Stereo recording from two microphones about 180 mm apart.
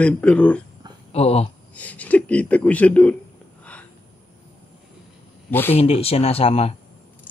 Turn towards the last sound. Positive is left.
turn(degrees=35)  # may be behind; listen again after turning